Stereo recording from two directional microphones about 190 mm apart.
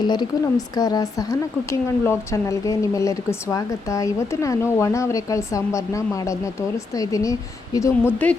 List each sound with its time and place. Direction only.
0.1 s a woman's voice: 20° left (ahead or behind)